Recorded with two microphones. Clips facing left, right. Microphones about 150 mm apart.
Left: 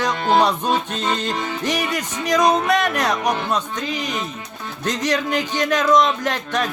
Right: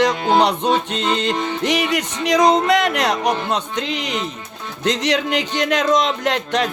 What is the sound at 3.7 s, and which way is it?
Speech, 75° right (ahead or behind).